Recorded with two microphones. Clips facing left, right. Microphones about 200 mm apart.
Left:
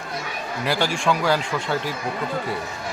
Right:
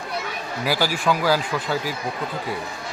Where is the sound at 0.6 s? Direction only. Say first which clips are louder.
Even; 5° right (ahead or behind).